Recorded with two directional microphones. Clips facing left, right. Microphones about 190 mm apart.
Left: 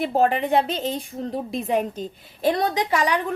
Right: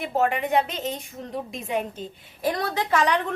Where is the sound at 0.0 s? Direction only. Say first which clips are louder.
Left 3 dB; 35° left (ahead or behind).